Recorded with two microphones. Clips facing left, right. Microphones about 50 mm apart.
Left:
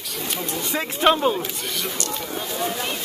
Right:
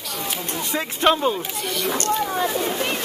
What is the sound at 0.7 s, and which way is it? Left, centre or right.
Speech, centre.